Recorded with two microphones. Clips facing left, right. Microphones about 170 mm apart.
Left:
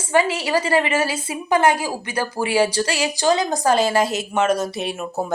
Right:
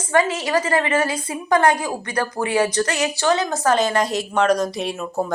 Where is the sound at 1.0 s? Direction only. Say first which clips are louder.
Even; 25° left (ahead or behind).